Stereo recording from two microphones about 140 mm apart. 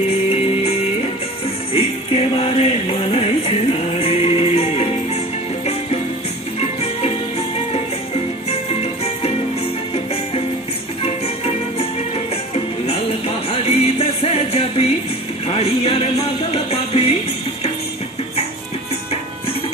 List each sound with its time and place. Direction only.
1.7 s music: 45° left (ahead or behind)
6.6 s music: 50° left (ahead or behind)
11.0 s music: 45° left (ahead or behind)
13.5 s music: 45° left (ahead or behind)